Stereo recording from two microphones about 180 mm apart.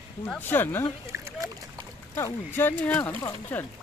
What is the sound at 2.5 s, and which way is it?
Speech, 10° left (ahead or behind).